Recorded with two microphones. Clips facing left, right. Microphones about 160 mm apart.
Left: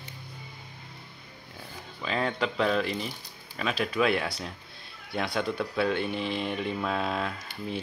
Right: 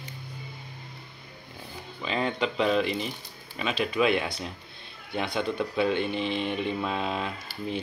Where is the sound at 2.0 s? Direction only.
Centre (ahead or behind).